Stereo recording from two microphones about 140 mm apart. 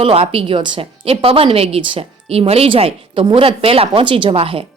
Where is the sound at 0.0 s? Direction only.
45° right (ahead or behind).